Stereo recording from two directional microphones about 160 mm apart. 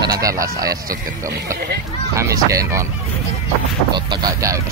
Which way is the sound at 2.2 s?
20° right (ahead or behind).